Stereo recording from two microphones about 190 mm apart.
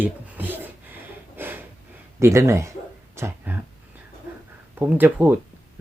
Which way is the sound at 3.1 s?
15° right (ahead or behind).